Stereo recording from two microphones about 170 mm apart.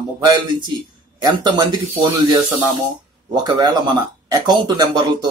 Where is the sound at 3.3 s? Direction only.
25° right (ahead or behind).